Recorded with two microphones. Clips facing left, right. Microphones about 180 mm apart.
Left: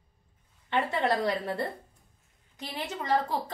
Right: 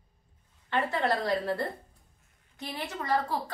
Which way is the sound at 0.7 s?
20° left (ahead or behind).